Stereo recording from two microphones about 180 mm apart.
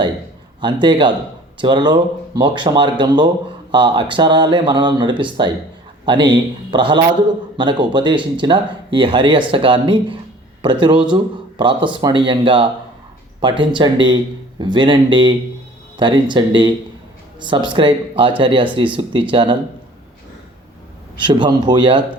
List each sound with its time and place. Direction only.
0.6 s speech: 25° right (ahead or behind)
21.2 s speech: 25° right (ahead or behind)